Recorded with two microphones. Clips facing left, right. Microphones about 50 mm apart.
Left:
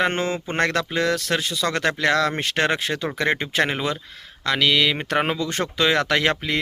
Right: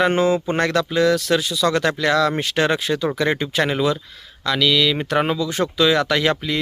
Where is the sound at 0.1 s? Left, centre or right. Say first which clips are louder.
Right 7 dB; left.